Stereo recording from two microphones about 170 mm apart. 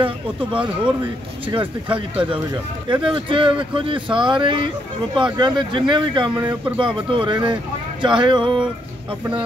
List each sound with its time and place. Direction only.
0.0 s speech: 30° right (ahead or behind)